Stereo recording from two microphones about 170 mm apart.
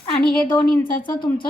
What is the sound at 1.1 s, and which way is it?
Speech, 30° left (ahead or behind).